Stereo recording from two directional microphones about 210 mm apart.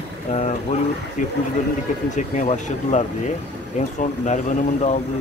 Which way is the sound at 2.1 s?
35° left (ahead or behind).